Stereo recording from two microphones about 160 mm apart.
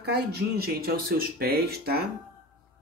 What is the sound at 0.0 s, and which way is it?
Speech, 90° right.